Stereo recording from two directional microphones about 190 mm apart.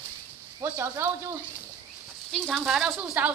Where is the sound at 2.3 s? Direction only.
5° left (ahead or behind).